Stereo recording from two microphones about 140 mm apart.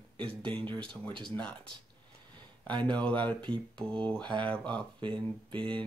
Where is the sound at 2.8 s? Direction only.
10° left (ahead or behind).